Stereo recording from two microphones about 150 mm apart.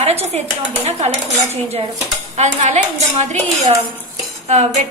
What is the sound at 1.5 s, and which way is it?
Speech, 45° right (ahead or behind).